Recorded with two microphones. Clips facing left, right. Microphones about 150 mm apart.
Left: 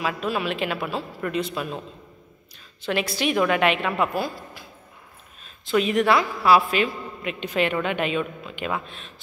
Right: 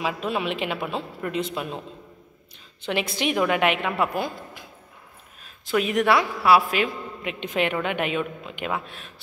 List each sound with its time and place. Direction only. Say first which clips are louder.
0.0 s a woman's voice: even; 20° right (ahead or behind)
2.9 s a woman's voice: left 1 dB; 15° right (ahead or behind)
5.9 s a woman's voice: left 1 dB; 10° right (ahead or behind)